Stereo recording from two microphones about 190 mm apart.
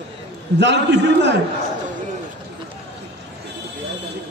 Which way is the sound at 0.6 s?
65° right (ahead or behind).